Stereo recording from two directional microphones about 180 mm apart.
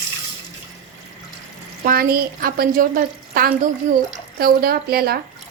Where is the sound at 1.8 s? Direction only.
55° right (ahead or behind).